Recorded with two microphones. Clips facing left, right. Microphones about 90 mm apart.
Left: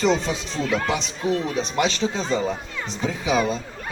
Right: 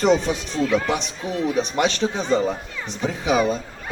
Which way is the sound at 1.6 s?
55° right (ahead or behind).